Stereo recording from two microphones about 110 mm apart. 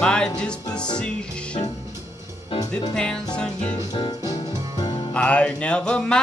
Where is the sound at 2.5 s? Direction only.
55° left (ahead or behind).